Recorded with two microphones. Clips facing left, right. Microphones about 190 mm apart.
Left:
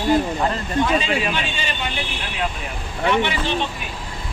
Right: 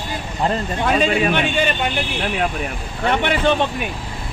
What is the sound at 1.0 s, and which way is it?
Speech, 55° right (ahead or behind).